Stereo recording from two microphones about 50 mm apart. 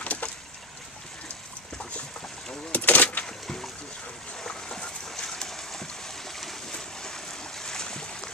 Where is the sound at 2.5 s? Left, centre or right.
Left.